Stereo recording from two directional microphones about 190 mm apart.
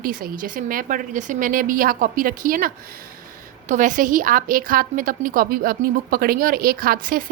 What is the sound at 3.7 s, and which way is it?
A woman's voice, 40° right (ahead or behind).